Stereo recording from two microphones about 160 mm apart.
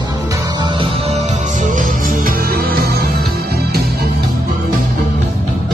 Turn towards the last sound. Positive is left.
turn(degrees=-75)  # may be behind; listen again after turning